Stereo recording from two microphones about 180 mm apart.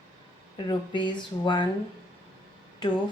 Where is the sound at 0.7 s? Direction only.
25° left (ahead or behind).